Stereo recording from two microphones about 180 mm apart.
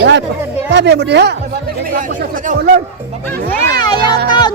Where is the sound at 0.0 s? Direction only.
75° right (ahead or behind).